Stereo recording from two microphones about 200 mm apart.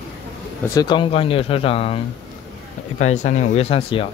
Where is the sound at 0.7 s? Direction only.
25° left (ahead or behind).